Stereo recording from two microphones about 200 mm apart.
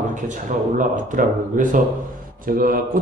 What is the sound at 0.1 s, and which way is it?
A man's voice, 40° right (ahead or behind).